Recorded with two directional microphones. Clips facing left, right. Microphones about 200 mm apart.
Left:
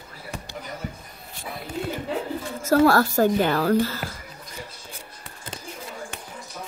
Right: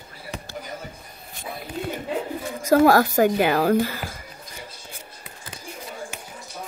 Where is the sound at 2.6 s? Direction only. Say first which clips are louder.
Right 2 dB; 15° right (ahead or behind).